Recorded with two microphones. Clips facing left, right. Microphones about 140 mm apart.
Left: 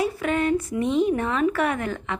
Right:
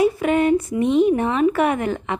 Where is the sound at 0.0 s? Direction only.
20° right (ahead or behind).